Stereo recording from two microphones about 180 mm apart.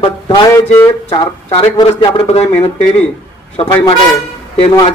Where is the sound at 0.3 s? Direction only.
20° left (ahead or behind).